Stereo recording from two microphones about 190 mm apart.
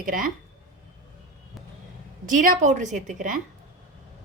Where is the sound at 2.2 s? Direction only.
45° right (ahead or behind).